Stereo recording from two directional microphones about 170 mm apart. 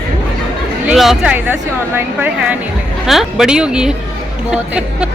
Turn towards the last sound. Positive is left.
turn(degrees=-5)  # may be behind; listen again after turning